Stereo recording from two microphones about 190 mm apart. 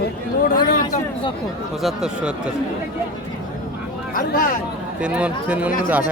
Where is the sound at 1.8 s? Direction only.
5° right (ahead or behind).